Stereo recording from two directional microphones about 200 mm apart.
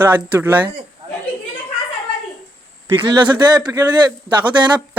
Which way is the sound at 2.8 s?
20° right (ahead or behind).